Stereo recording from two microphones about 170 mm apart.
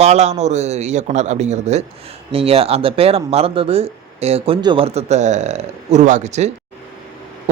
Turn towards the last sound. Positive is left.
turn(degrees=-40)  # may be behind; listen again after turning